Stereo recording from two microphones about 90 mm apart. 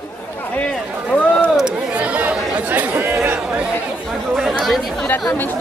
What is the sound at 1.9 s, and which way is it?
Chatter, 15° right (ahead or behind).